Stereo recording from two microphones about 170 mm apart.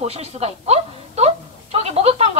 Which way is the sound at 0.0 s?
40° right (ahead or behind).